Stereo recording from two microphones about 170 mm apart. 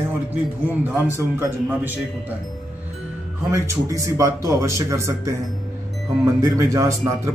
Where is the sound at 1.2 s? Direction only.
15° right (ahead or behind).